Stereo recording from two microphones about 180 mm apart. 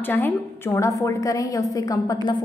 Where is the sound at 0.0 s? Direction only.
10° left (ahead or behind).